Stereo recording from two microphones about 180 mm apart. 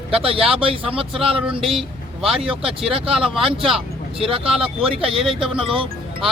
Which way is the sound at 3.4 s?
30° right (ahead or behind).